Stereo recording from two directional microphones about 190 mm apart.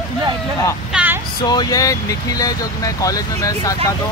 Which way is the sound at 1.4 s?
20° left (ahead or behind).